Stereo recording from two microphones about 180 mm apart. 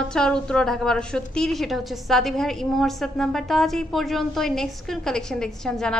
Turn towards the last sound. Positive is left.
turn(degrees=5)  # may be behind; listen again after turning